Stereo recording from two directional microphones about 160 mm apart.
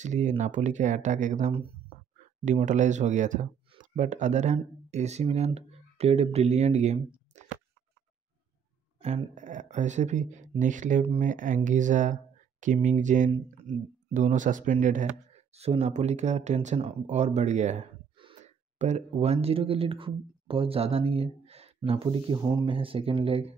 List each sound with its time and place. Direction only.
0.0 s speech: 50° right (ahead or behind)
7.3 s a sound: 45° right (ahead or behind)
9.0 s speech: 40° right (ahead or behind)
18.1 s gasp: 30° right (ahead or behind)
18.4 s speech: 45° right (ahead or behind); by 22.8 s 25° right (ahead or behind)
22.8 s speech: 35° right (ahead or behind)